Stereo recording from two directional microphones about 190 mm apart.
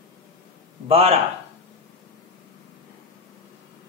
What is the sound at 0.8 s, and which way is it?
Speech, 30° right (ahead or behind).